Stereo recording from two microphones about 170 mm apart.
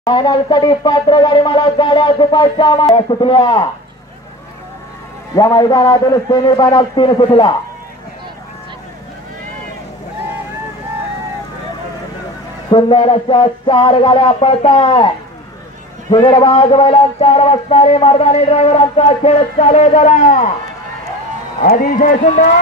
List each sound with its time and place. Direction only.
0.0 s speech: 25° left (ahead or behind)
5.3 s speech: 20° left (ahead or behind)
12.6 s a sound: 30° left (ahead or behind); by 20.5 s 50° left (ahead or behind)
21.5 s a man's voice: 55° left (ahead or behind)